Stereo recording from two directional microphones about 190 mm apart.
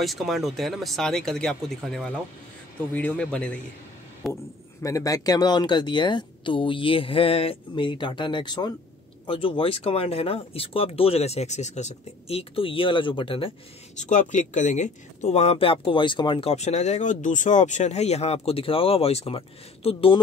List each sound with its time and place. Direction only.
0.0 s speech: centre (ahead or behind)
4.8 s speech: 20° left (ahead or behind)
13.9 s speech: 40° left (ahead or behind)